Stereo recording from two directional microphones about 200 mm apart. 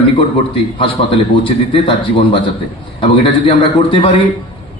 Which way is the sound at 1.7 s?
25° left (ahead or behind).